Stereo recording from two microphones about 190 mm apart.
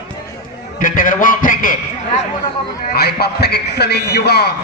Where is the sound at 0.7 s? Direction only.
45° left (ahead or behind).